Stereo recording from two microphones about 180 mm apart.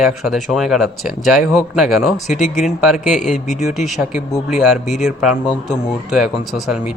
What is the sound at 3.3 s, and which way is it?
Speech, 45° left (ahead or behind).